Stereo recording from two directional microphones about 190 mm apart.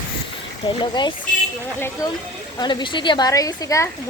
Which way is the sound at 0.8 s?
25° left (ahead or behind).